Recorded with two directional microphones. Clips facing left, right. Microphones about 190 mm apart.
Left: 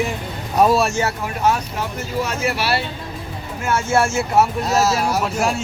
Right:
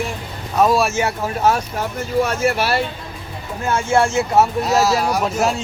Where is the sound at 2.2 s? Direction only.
50° right (ahead or behind).